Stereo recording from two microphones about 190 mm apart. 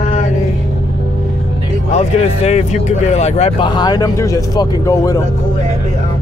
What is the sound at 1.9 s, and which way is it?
Speech, 35° left (ahead or behind).